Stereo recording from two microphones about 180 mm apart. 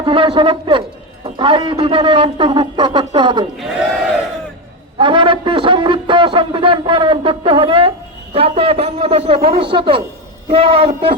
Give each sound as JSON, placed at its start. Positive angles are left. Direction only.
{"t": 0.0, "sound": "a man's voice", "side_deg": -30}
{"t": 4.9, "sound": "a man's voice", "side_deg": -25}